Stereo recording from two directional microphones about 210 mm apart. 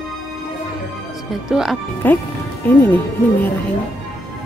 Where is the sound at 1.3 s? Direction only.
Centre (ahead or behind).